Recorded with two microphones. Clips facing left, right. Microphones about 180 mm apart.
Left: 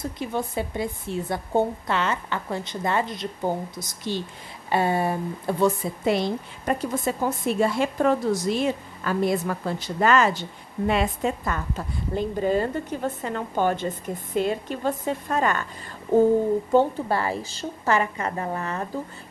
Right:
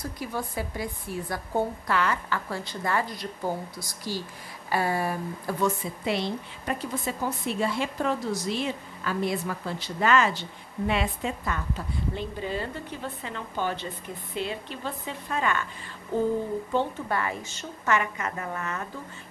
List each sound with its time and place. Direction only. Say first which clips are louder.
0.0 s a woman's voice: left 4 dB; 25° left (ahead or behind)
6.0 s a woman's voice: left 5 dB; 45° left (ahead or behind)
17.1 s a woman's voice: left 4 dB; 30° left (ahead or behind)